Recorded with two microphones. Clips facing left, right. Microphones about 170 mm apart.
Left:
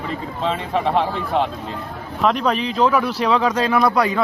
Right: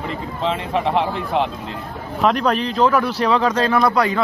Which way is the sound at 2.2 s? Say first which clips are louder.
Right 1 dB; centre (ahead or behind).